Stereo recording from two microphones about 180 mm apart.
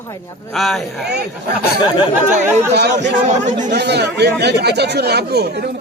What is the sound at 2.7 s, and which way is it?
Speech, 70° right (ahead or behind).